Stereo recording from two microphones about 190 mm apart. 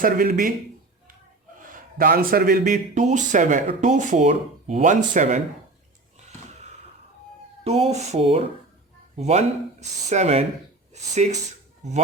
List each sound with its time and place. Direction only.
0.0 s speech: 50° right (ahead or behind)
1.7 s a man's voice: 50° right (ahead or behind)
6.1 s a sound: 35° right (ahead or behind)
7.6 s a man's voice: 35° right (ahead or behind)